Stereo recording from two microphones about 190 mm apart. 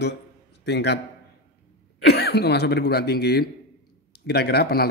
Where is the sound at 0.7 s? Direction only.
65° left (ahead or behind).